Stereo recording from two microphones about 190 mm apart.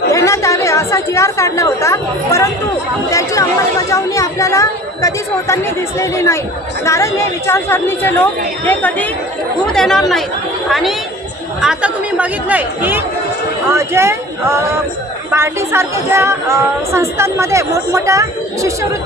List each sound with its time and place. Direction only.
0.1 s a woman's voice: 15° left (ahead or behind); by 14.2 s 15° right (ahead or behind)
15.3 s speech: 15° right (ahead or behind)